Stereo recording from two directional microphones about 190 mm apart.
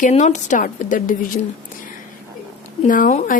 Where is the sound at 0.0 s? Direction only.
35° left (ahead or behind).